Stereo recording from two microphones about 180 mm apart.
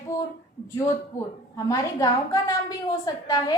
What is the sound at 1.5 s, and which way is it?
A woman's voice, 20° left (ahead or behind).